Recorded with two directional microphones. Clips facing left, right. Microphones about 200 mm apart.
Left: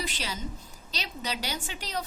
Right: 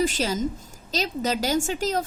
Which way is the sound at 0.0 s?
45° right (ahead or behind).